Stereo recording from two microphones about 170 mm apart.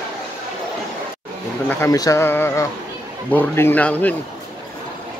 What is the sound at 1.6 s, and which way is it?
A man's voice, 15° left (ahead or behind).